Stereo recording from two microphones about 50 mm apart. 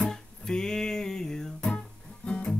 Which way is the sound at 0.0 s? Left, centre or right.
Centre.